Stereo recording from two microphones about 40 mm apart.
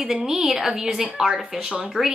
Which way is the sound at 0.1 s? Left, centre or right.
Centre.